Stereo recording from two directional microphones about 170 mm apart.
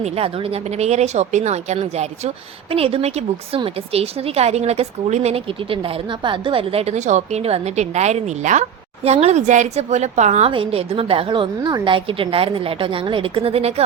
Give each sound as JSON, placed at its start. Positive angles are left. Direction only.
{"t": 0.0, "sound": "a woman's voice", "side_deg": -35}